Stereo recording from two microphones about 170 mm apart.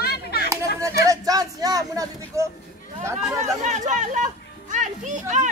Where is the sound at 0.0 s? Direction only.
70° left (ahead or behind).